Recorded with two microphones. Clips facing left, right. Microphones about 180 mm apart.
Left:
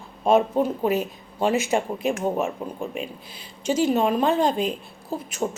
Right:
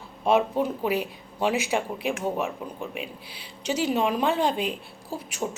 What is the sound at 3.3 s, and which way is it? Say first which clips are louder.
Speech: left 5 dB; 45° left (ahead or behind).